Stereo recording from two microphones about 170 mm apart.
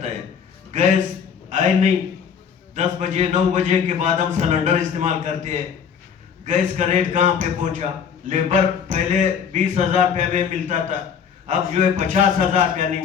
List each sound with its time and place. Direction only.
0.7 s a man's voice: 45° right (ahead or behind)